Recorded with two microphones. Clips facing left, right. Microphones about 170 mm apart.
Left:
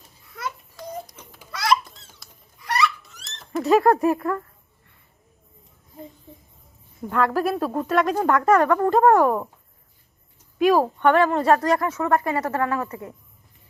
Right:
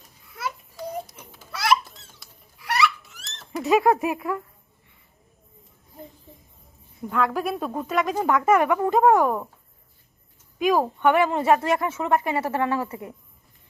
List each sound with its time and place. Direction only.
1.0 s babbling: 10° right (ahead or behind)
1.5 s a sound: 5° right (ahead or behind)
2.6 s rodents: 5° right (ahead or behind)
7.1 s speech: centre (ahead or behind)
8.5 s speech: 15° right (ahead or behind)
8.9 s speech: centre (ahead or behind)
10.6 s speech: centre (ahead or behind)
11.1 s speech: 15° right (ahead or behind)